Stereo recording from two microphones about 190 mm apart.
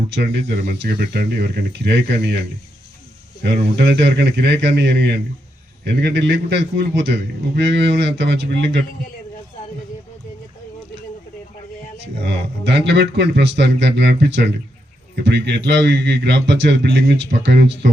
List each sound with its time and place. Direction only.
0.1 s a man's voice: 65° right (ahead or behind)
3.4 s a man's voice: 60° right (ahead or behind)
12.2 s a man's voice: 65° right (ahead or behind)